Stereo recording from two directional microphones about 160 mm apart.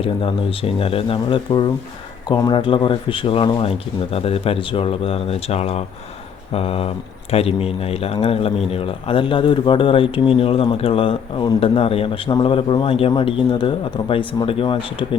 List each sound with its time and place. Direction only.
0.0 s speech: 35° left (ahead or behind)